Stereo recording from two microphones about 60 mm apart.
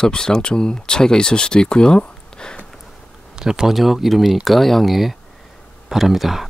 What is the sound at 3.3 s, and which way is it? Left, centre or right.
Speech, centre.